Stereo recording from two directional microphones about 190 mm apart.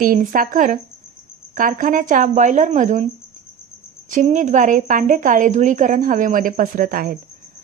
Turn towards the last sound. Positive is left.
turn(degrees=-45)  # may be behind; listen again after turning